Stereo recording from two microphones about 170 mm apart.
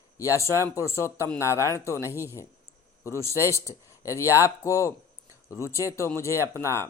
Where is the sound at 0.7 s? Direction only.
15° left (ahead or behind).